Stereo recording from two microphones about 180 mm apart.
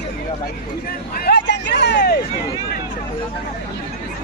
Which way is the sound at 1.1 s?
65° left (ahead or behind).